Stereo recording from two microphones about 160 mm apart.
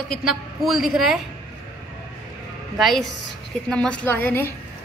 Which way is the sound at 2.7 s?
Centre (ahead or behind).